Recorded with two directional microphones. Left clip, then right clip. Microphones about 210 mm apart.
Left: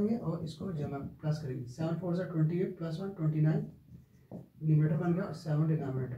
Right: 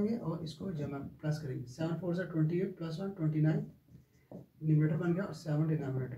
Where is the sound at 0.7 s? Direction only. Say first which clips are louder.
Left 2 dB; 5° right (ahead or behind).